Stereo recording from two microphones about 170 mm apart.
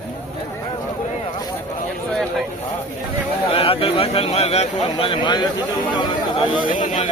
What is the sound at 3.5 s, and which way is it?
Speech, 35° left (ahead or behind).